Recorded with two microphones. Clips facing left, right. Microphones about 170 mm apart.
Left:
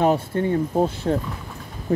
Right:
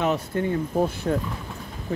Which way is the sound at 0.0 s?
30° left (ahead or behind).